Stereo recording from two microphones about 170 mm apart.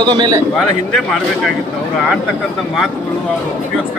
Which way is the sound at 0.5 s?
Centre (ahead or behind).